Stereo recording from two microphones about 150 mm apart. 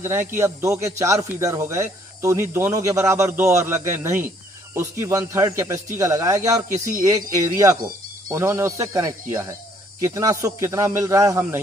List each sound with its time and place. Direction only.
0.0 s a man's voice: 15° right (ahead or behind)